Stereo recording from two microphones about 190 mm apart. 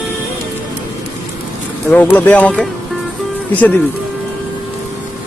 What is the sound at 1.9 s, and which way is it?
Speech, 10° left (ahead or behind).